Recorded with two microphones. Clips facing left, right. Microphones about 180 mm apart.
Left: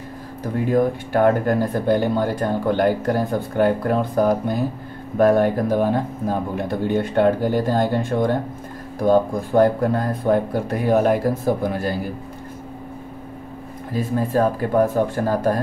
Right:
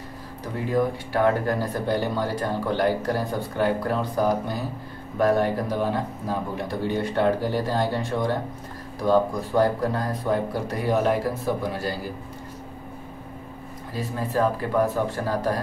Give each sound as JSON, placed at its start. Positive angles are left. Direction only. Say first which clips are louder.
{"t": 0.4, "sound": "speech", "louder": "left 5 dB", "side_deg": 50}
{"t": 13.9, "sound": "speech", "louder": "left 6 dB", "side_deg": 50}